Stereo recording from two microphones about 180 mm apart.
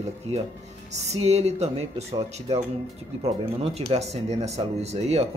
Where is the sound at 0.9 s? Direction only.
35° right (ahead or behind).